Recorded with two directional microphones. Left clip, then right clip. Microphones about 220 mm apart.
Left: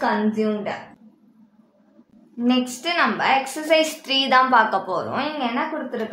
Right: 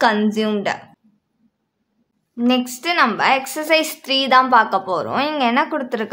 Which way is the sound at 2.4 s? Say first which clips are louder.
Right 3 dB; 30° right (ahead or behind).